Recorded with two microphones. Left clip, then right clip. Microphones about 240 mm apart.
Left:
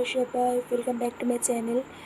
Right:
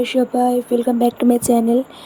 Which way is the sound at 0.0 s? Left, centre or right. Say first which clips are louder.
Right 8 dB; right.